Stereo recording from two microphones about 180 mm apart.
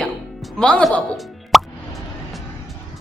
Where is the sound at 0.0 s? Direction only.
5° left (ahead or behind).